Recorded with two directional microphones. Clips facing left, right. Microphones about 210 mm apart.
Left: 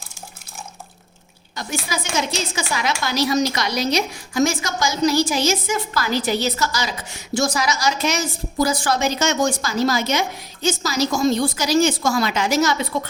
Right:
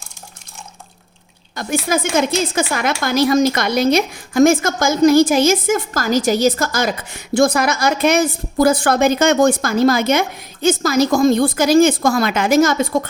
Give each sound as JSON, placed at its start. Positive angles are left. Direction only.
{"t": 1.5, "sound": "a woman's voice", "side_deg": -50}